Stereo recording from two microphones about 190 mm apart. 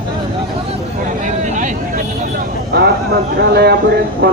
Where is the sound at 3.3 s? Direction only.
60° right (ahead or behind).